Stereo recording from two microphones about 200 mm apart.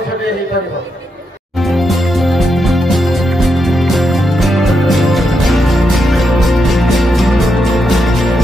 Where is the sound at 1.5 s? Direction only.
Centre (ahead or behind).